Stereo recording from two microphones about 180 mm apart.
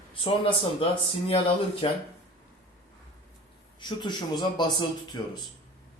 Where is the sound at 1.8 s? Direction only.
30° left (ahead or behind).